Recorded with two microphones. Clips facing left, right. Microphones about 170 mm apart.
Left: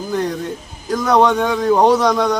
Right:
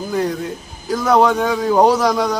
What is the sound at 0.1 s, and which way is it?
A man's voice, 5° right (ahead or behind).